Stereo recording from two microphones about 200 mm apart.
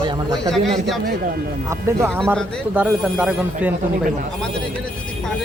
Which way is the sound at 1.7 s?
15° right (ahead or behind).